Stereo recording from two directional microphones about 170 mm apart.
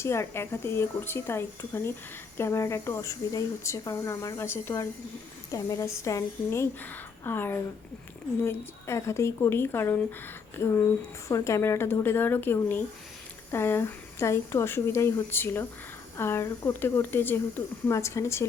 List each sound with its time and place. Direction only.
0.0 s a woman's voice: 15° left (ahead or behind)
11.3 s speech: 20° left (ahead or behind)